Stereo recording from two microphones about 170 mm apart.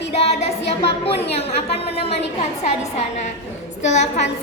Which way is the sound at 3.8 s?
45° left (ahead or behind).